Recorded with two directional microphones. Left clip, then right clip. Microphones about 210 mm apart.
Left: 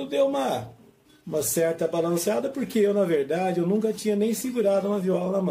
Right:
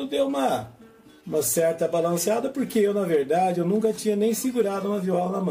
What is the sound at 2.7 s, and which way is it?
A man's voice, 20° left (ahead or behind).